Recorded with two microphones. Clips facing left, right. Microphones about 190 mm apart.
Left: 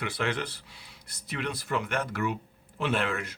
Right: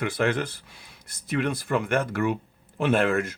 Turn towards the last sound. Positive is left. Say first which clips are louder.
# right 7 dB
turn(degrees=-50)  # may be behind; listen again after turning